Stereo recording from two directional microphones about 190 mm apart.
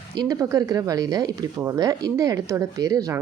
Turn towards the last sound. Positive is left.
turn(degrees=-20)  # may be behind; listen again after turning